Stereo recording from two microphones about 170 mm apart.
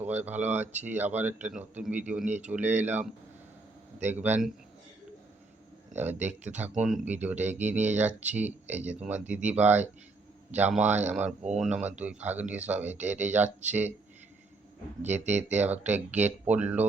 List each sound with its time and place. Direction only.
0.0 s speech: 10° right (ahead or behind)
6.6 s speech: 5° right (ahead or behind)
15.0 s speech: 45° right (ahead or behind)
15.5 s speech: 10° right (ahead or behind)